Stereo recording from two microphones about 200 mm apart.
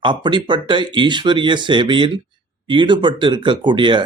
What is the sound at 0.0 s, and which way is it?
Speech, 25° right (ahead or behind).